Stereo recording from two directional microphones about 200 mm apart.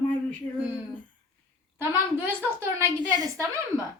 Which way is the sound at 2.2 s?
10° right (ahead or behind).